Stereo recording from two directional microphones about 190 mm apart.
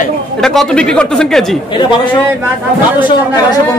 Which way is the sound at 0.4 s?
Centre (ahead or behind).